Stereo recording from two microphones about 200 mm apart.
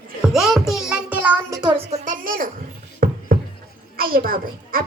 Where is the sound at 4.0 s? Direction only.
45° right (ahead or behind).